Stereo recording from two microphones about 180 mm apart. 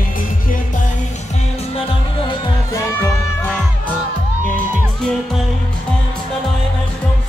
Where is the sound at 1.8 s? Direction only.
30° left (ahead or behind).